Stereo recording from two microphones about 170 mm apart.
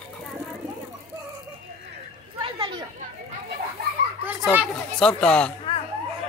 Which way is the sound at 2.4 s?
30° right (ahead or behind).